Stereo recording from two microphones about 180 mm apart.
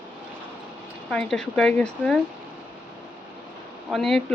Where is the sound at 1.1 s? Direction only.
5° left (ahead or behind).